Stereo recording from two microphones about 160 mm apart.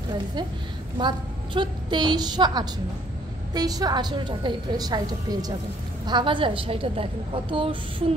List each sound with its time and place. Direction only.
0.9 s a woman's voice: 30° right (ahead or behind)